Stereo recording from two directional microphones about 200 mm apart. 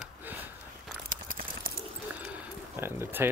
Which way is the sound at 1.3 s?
45° right (ahead or behind).